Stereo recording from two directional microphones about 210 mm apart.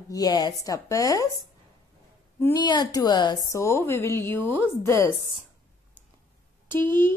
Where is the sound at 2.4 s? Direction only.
20° left (ahead or behind).